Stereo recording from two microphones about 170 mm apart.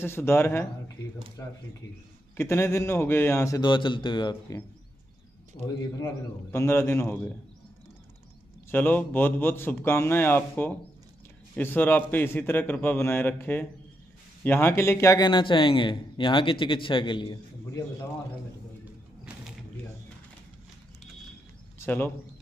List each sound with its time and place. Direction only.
0.0 s a man's voice: 15° left (ahead or behind)
5.9 s a man's voice: 15° left (ahead or behind)
8.6 s a man's voice: 10° left (ahead or behind); by 17.4 s 30° left (ahead or behind)
21.8 s a man's voice: 10° left (ahead or behind)